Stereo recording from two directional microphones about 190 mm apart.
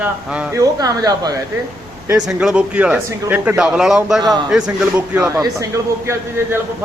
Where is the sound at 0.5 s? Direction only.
20° right (ahead or behind).